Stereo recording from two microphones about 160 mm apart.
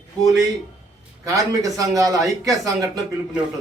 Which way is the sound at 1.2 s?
20° right (ahead or behind).